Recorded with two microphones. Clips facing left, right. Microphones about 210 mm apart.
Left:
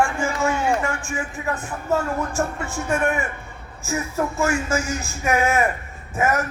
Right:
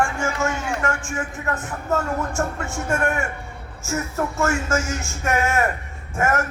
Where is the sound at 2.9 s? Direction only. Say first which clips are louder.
Left 1 dB; 5° left (ahead or behind).